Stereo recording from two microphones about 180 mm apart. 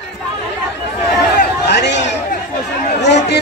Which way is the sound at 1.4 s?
70° left (ahead or behind).